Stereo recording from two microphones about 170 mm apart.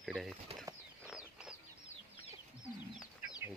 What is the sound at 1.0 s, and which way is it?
Bird, 5° right (ahead or behind).